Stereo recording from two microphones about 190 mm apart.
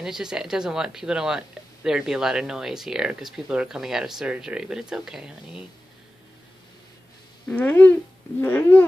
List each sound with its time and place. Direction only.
0.0 s speech: 5° right (ahead or behind)
7.4 s speech: 10° left (ahead or behind)